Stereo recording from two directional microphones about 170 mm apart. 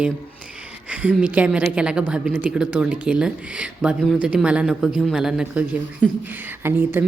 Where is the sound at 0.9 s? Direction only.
5° right (ahead or behind).